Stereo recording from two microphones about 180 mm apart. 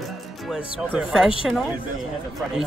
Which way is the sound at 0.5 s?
5° right (ahead or behind).